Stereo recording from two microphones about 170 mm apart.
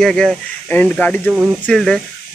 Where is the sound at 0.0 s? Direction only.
5° left (ahead or behind).